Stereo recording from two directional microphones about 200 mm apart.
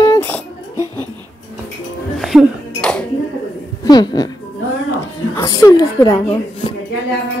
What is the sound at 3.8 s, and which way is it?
Speech, 20° left (ahead or behind).